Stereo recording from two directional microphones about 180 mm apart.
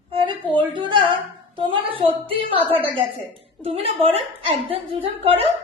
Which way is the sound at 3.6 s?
35° right (ahead or behind).